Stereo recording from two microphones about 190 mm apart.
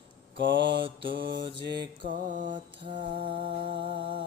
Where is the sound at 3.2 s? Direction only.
25° right (ahead or behind).